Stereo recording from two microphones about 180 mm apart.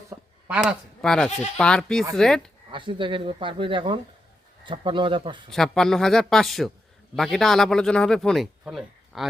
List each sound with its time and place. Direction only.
0.1 s a sound: 10° right (ahead or behind)
1.5 s a man's voice: 5° left (ahead or behind)
2.7 s speech: 25° right (ahead or behind)
5.5 s a man's voice: centre (ahead or behind)